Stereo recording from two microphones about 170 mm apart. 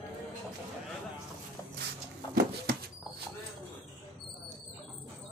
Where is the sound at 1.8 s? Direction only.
65° right (ahead or behind).